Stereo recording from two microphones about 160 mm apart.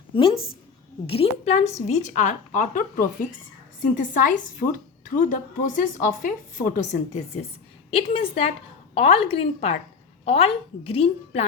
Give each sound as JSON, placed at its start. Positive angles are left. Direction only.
{"t": 1.0, "sound": "a child's voice", "side_deg": 35}